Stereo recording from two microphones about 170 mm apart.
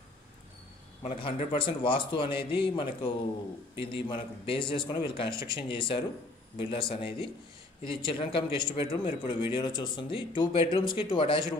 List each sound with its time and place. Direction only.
1.0 s a man's voice: 35° left (ahead or behind)